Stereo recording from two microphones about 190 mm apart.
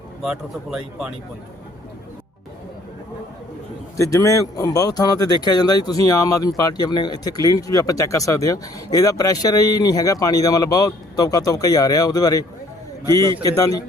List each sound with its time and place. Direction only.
0.2 s speech: 5° right (ahead or behind)
3.9 s speech: 15° left (ahead or behind)